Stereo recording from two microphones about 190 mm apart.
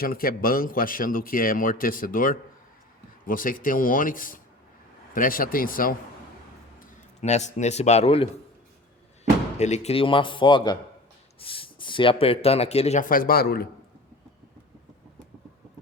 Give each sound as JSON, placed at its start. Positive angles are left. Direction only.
{"t": 0.0, "sound": "a man's voice", "side_deg": 50}
{"t": 9.6, "sound": "a man's voice", "side_deg": 35}